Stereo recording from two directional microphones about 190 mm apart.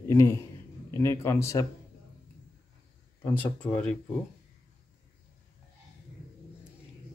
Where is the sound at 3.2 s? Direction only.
10° left (ahead or behind).